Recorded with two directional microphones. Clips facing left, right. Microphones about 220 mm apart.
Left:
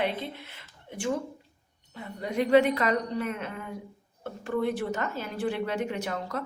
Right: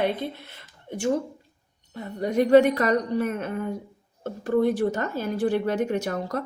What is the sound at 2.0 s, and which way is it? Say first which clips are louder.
A woman's voice: right 6 dB; 45° right (ahead or behind).